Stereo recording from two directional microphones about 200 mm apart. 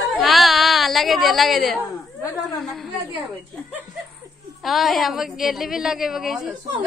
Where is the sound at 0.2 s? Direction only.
Centre (ahead or behind).